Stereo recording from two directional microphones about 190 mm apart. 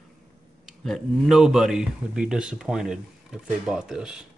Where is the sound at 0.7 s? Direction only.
Centre (ahead or behind).